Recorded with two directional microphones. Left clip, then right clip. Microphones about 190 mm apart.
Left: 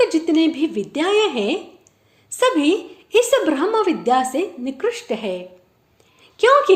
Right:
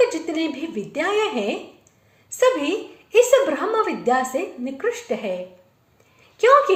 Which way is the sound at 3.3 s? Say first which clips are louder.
Left 1 dB; 30° left (ahead or behind).